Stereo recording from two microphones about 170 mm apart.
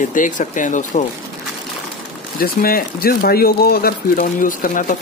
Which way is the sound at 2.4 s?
60° left (ahead or behind).